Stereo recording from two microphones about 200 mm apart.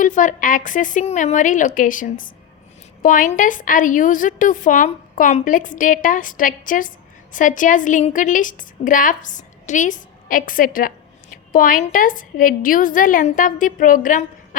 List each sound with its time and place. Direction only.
0.0 s a woman's voice: 40° left (ahead or behind)